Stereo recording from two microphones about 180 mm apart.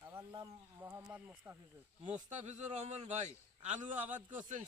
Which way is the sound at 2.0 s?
40° right (ahead or behind).